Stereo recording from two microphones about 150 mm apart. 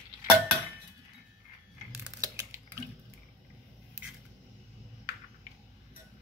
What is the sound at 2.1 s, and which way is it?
Typing, 20° right (ahead or behind).